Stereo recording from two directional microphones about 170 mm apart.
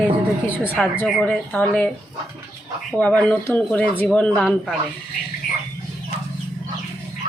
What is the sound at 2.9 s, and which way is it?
Speech, 10° left (ahead or behind).